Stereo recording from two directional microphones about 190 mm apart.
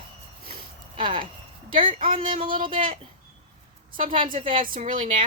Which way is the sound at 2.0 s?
25° right (ahead or behind).